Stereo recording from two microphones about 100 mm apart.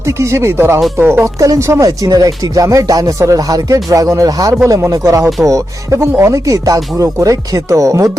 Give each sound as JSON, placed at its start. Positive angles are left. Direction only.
{"t": 0.0, "sound": "speech", "side_deg": -30}
{"t": 1.9, "sound": "speech", "side_deg": -40}